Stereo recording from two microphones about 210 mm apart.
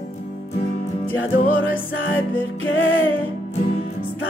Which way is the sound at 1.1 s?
70° left (ahead or behind).